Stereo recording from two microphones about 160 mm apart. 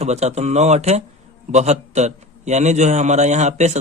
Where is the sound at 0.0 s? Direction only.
45° right (ahead or behind).